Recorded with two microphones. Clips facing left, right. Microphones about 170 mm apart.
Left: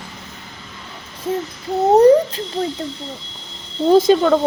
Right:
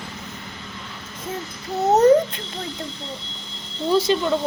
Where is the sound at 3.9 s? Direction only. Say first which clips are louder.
Left 7 dB; 50° left (ahead or behind).